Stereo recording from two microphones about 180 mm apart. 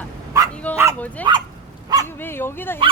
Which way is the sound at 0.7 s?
15° right (ahead or behind).